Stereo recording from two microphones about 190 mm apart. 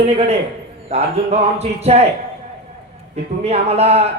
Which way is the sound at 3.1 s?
35° right (ahead or behind).